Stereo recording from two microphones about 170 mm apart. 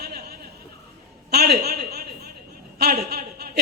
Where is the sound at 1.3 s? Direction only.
65° right (ahead or behind).